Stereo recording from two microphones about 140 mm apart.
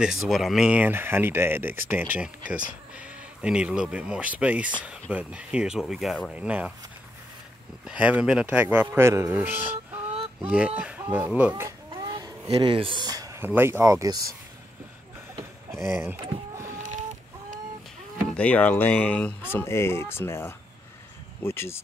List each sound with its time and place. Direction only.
0.0 s speech: centre (ahead or behind)
7.8 s speech: 10° right (ahead or behind)
11.9 s a sound: 30° right (ahead or behind)
12.4 s speech: 40° right (ahead or behind)
15.3 s vehicle: 20° right (ahead or behind)
16.7 s chicken: 60° right (ahead or behind)
18.3 s speech: 10° left (ahead or behind)